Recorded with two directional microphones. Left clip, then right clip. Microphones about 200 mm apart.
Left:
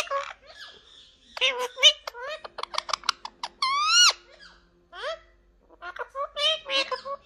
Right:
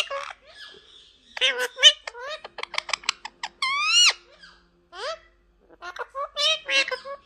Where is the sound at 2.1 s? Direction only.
25° right (ahead or behind).